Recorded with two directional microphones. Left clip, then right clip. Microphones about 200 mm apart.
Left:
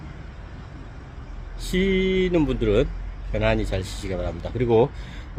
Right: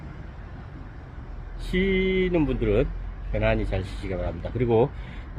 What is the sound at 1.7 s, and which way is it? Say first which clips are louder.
Speech: left 2 dB; 20° left (ahead or behind).